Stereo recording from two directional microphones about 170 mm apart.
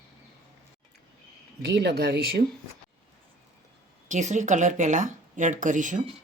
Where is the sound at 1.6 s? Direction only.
80° right.